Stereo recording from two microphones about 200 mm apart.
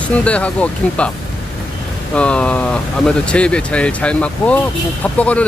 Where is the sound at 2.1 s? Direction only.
5° left (ahead or behind).